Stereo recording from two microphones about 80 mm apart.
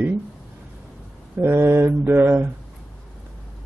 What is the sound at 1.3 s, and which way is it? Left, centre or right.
A man's voice, right.